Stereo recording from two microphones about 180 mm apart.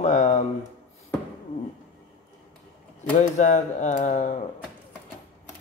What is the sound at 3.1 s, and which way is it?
Speech, 45° left (ahead or behind).